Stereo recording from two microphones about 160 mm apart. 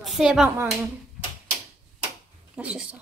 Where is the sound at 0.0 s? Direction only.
Centre (ahead or behind).